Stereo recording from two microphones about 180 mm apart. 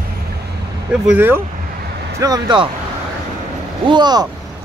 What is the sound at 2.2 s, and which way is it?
Speech, 25° right (ahead or behind).